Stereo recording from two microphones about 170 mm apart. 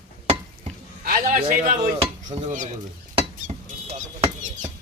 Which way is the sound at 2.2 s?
45° right (ahead or behind).